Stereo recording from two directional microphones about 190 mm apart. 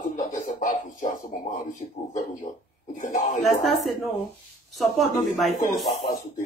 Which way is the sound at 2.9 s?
40° left (ahead or behind).